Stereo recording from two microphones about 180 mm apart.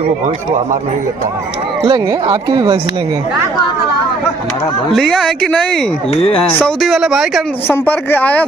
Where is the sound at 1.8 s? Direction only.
20° right (ahead or behind).